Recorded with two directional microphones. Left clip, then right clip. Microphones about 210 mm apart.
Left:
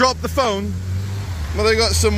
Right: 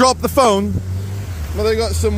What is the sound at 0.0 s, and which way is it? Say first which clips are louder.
Speech: right 5 dB; 45° right (ahead or behind).